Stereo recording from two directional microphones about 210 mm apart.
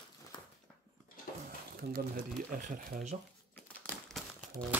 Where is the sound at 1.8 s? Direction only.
45° right (ahead or behind).